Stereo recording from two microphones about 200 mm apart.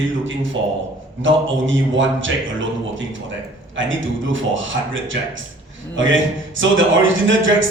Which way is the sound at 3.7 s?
70° right (ahead or behind).